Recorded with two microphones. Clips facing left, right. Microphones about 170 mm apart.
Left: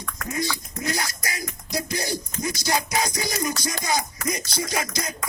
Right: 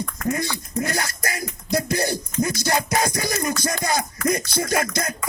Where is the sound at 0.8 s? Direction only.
55° right (ahead or behind).